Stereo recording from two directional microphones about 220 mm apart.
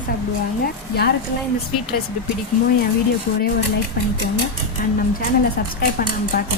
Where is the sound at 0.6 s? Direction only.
45° left (ahead or behind).